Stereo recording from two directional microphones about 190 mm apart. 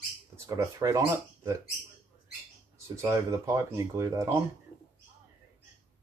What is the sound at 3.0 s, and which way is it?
Speech, 15° right (ahead or behind).